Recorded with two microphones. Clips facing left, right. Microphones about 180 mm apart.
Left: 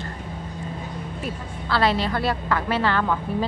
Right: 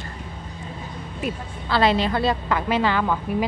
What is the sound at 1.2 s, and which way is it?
A woman's voice, 20° right (ahead or behind).